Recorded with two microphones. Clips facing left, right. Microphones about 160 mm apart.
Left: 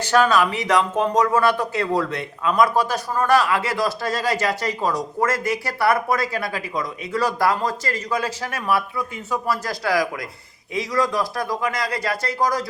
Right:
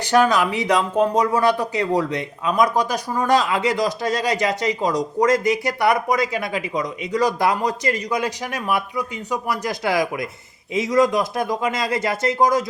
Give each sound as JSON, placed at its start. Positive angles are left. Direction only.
{"t": 0.0, "sound": "speech", "side_deg": -15}